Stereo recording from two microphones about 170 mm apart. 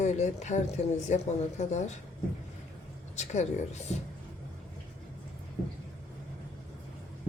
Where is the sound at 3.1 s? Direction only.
40° left (ahead or behind).